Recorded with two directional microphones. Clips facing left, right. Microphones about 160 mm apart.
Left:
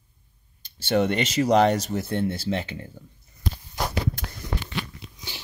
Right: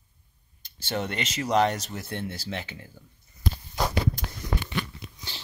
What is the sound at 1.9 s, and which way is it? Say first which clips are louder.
Speech: left 8 dB; 30° left (ahead or behind).